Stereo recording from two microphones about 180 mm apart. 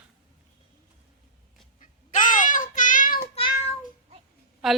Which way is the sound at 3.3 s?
35° left (ahead or behind).